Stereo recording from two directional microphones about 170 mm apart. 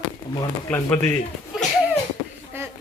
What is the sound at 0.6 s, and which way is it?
Speech, 10° left (ahead or behind).